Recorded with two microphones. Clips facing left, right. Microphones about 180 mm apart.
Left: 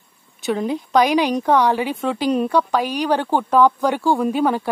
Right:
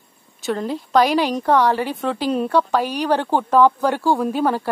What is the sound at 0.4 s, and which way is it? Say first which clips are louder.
A woman's voice: left 2 dB; centre (ahead or behind).